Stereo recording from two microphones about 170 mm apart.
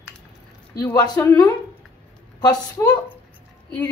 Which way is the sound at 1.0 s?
20° left (ahead or behind).